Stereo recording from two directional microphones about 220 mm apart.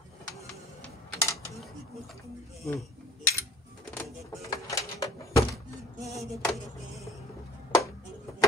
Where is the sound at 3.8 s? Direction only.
5° left (ahead or behind).